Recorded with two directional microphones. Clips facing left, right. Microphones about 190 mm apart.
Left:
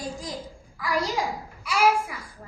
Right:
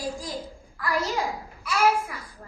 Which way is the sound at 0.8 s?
10° left (ahead or behind).